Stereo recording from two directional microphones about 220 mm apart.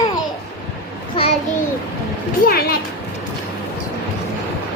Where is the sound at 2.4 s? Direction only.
45° left (ahead or behind).